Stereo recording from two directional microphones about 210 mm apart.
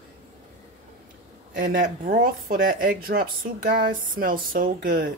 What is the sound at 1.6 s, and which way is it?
Speech, 40° right (ahead or behind).